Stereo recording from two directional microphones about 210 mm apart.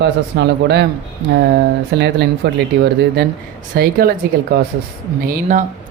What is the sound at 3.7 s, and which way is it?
Speech, 45° right (ahead or behind).